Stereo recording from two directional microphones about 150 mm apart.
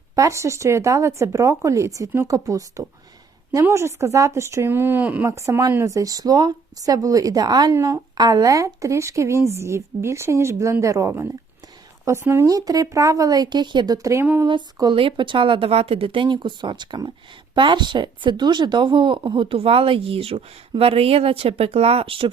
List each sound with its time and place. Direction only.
0.2 s speech: 20° right (ahead or behind)
14.4 s speech: 30° right (ahead or behind)